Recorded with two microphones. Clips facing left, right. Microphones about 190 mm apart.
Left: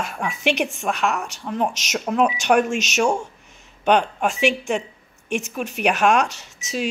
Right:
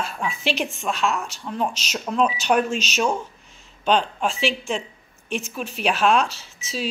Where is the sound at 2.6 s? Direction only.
75° left (ahead or behind).